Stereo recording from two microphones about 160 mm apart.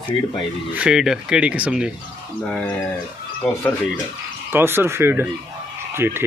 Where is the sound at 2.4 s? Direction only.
10° left (ahead or behind).